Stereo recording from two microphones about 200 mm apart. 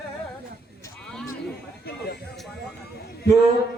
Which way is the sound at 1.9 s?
55° left (ahead or behind).